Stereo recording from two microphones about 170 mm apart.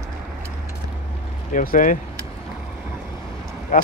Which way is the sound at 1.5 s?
50° left (ahead or behind).